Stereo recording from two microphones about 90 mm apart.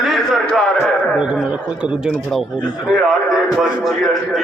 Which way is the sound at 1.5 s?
10° right (ahead or behind).